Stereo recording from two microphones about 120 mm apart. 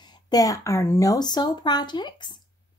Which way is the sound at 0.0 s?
35° left (ahead or behind).